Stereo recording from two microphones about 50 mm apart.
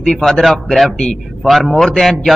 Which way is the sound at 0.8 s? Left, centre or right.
Centre.